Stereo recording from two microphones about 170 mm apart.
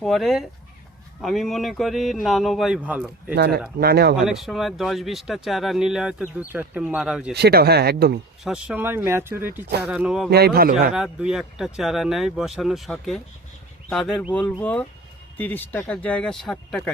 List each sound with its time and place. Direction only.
0.0 s speech: centre (ahead or behind)
3.3 s speech: 70° right (ahead or behind)
4.2 s speech: centre (ahead or behind)
7.3 s speech: 70° right (ahead or behind)
8.4 s speech: 5° right (ahead or behind)
10.2 s a man's voice: 70° right (ahead or behind)
10.9 s speech: 5° right (ahead or behind)